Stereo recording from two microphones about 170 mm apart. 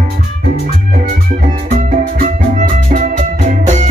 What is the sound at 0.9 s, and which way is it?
Music, 50° right (ahead or behind).